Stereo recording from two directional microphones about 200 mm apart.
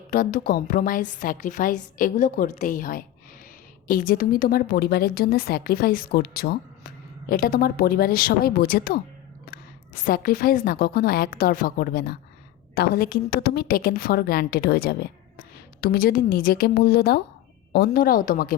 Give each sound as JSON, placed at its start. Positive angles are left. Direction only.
{"t": 0.1, "sound": "a woman's voice", "side_deg": 45}
{"t": 10.1, "sound": "a woman's voice", "side_deg": 45}